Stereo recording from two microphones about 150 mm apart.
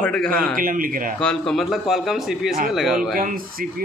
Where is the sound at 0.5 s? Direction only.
70° right (ahead or behind).